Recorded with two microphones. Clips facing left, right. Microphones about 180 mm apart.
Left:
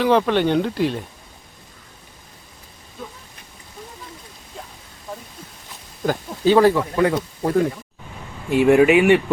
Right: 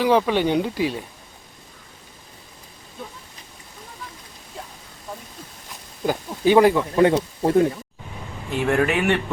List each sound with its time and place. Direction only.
0.0 s speech: 10° right (ahead or behind)
6.1 s speech: 15° right (ahead or behind)
6.9 s speech: 25° right (ahead or behind)
8.5 s speech: 10° left (ahead or behind)